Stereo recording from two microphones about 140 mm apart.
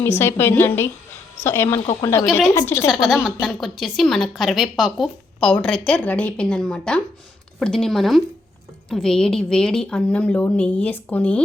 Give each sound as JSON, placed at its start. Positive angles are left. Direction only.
{"t": 0.0, "sound": "a woman's voice", "side_deg": 15}
{"t": 2.9, "sound": "a woman's voice", "side_deg": 0}